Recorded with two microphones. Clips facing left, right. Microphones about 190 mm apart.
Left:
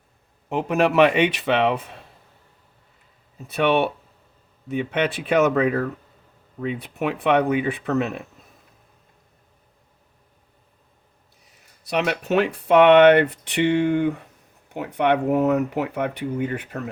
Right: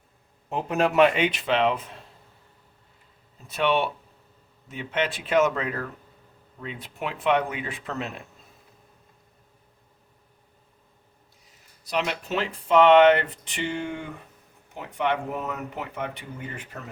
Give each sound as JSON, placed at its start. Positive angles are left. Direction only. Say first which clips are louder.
{"t": 0.5, "sound": "speech", "louder": "left 3 dB", "side_deg": 75}
{"t": 3.4, "sound": "speech", "louder": "left 4 dB", "side_deg": 60}
{"t": 11.9, "sound": "speech", "louder": "left 5 dB", "side_deg": 65}